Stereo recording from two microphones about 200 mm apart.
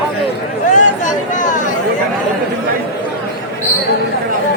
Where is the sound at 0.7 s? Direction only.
40° left (ahead or behind).